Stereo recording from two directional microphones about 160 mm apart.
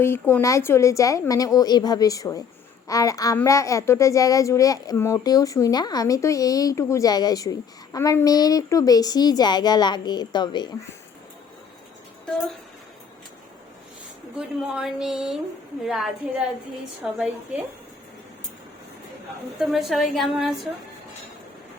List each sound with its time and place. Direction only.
0.0 s speech: 15° left (ahead or behind)
14.3 s a woman's voice: 5° right (ahead or behind)
17.0 s a woman's voice: 5° right (ahead or behind)
19.5 s a woman's voice: centre (ahead or behind)